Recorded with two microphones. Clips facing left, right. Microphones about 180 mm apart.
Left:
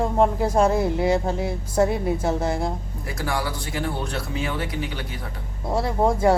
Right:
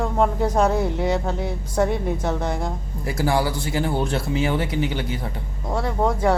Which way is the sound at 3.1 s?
25° right (ahead or behind).